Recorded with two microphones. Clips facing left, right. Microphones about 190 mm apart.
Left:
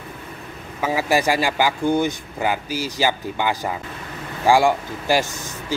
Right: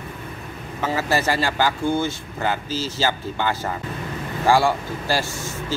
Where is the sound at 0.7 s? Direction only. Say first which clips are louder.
Left 2 dB; 10° left (ahead or behind).